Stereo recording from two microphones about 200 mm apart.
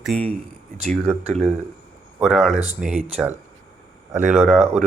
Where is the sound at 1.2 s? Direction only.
35° right (ahead or behind).